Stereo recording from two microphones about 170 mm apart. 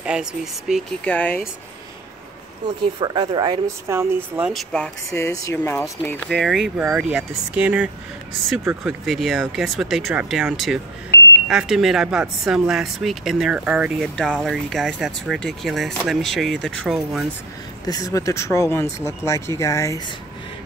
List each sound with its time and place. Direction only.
0.0 s speech: 5° right (ahead or behind)
3.0 s speech: 25° right (ahead or behind)
4.5 s speech: 5° left (ahead or behind)
6.2 s speech: centre (ahead or behind)
17.8 s speech: 20° left (ahead or behind)